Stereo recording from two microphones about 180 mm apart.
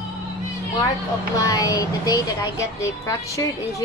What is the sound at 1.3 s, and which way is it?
A woman's voice, 20° left (ahead or behind).